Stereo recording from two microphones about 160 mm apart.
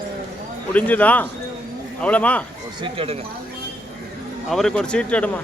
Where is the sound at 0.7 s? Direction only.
10° left (ahead or behind).